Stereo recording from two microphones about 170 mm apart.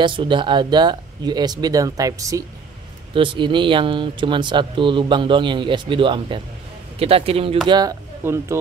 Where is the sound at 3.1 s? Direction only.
30° right (ahead or behind).